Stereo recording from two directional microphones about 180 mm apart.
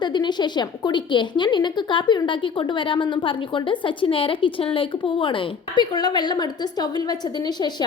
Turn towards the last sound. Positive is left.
turn(degrees=25)  # may be behind; listen again after turning